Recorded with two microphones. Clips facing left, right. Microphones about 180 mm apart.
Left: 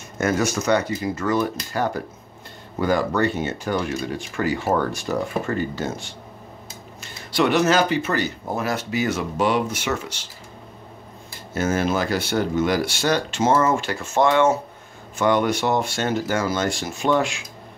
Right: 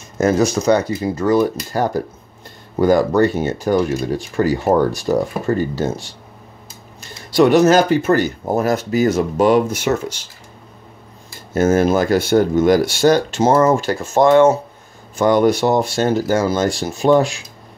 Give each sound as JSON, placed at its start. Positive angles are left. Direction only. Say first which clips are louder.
{"t": 0.2, "sound": "speech", "louder": "right 6 dB", "side_deg": -35}
{"t": 11.5, "sound": "speech", "louder": "right 8 dB", "side_deg": -45}